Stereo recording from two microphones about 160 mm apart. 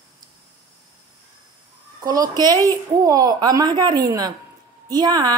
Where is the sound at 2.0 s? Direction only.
25° right (ahead or behind).